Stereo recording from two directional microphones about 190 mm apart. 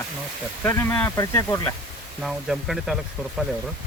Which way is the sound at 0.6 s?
15° left (ahead or behind).